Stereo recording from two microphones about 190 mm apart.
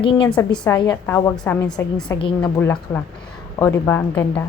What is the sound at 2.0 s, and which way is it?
Speech, 25° left (ahead or behind).